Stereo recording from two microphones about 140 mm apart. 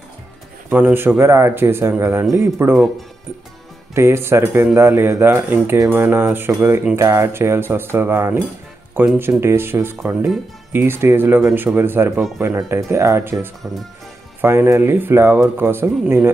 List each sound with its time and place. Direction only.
0.7 s speech: 10° right (ahead or behind)
3.9 s speech: 20° right (ahead or behind)